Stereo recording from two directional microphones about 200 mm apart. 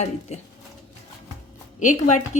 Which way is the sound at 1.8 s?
35° left (ahead or behind).